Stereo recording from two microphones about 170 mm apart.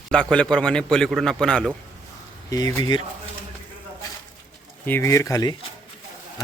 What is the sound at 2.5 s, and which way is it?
Speech, 20° left (ahead or behind).